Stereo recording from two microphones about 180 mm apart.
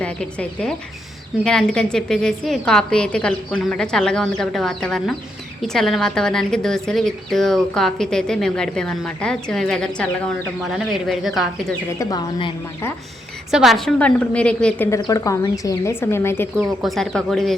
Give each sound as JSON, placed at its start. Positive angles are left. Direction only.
{"t": 0.0, "sound": "a woman's voice", "side_deg": 5}
{"t": 11.9, "sound": "a woman's voice", "side_deg": 25}
{"t": 13.5, "sound": "a woman's voice", "side_deg": 0}
{"t": 14.8, "sound": "a woman's voice", "side_deg": 20}
{"t": 16.6, "sound": "a woman's voice", "side_deg": 0}